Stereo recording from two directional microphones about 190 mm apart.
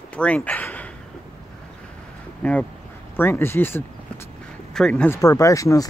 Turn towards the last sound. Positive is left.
turn(degrees=15)  # may be behind; listen again after turning